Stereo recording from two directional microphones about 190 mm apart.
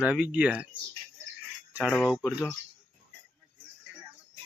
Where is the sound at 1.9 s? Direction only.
10° left (ahead or behind).